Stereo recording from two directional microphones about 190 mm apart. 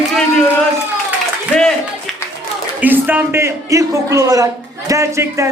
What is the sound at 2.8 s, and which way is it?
Speech, 10° right (ahead or behind).